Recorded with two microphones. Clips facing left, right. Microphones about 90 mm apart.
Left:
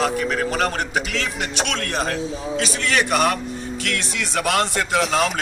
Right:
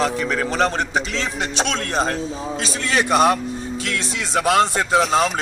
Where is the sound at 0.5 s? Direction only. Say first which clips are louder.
Right 2 dB; 30° right (ahead or behind).